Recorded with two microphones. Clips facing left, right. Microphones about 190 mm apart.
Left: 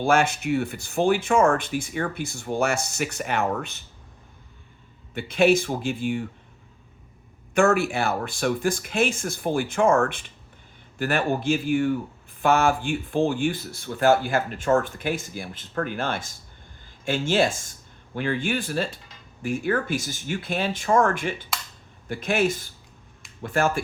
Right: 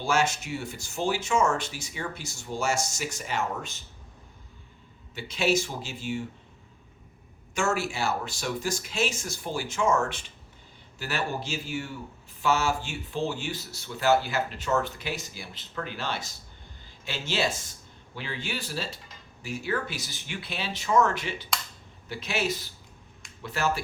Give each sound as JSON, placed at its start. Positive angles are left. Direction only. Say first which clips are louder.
{"t": 0.0, "sound": "speech", "louder": "left 5 dB", "side_deg": 55}
{"t": 5.1, "sound": "speech", "louder": "left 7 dB", "side_deg": 55}
{"t": 7.5, "sound": "speech", "louder": "left 8 dB", "side_deg": 60}